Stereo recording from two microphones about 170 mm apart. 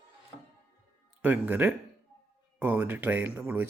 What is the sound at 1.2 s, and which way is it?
Speech, 10° right (ahead or behind).